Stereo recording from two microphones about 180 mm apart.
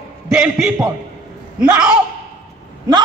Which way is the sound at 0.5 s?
15° right (ahead or behind).